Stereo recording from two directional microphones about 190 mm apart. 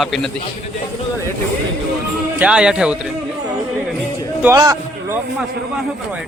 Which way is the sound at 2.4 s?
5° right (ahead or behind).